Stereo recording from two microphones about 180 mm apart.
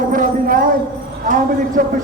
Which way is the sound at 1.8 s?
50° right (ahead or behind).